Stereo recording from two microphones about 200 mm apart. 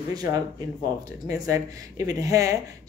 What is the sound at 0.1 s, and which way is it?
Speech, 20° right (ahead or behind).